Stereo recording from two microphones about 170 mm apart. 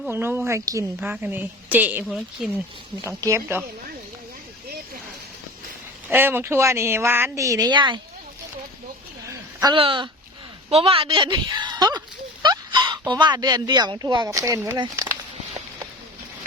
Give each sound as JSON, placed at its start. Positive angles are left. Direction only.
{"t": 0.1, "sound": "speech", "side_deg": -15}
{"t": 0.9, "sound": "a woman's voice", "side_deg": -10}
{"t": 3.1, "sound": "speech", "side_deg": -20}
{"t": 6.1, "sound": "speech", "side_deg": -10}
{"t": 9.3, "sound": "a sound", "side_deg": -20}
{"t": 9.7, "sound": "speech", "side_deg": -30}